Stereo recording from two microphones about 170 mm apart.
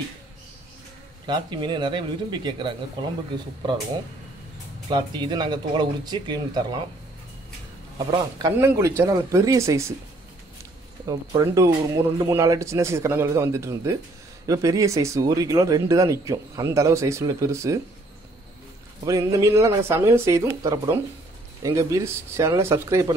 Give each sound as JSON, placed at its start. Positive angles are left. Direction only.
{"t": 1.2, "sound": "speech", "side_deg": -25}
{"t": 4.8, "sound": "speech", "side_deg": -25}
{"t": 8.4, "sound": "speech", "side_deg": -20}
{"t": 11.1, "sound": "speech", "side_deg": -20}
{"t": 19.0, "sound": "speech", "side_deg": -20}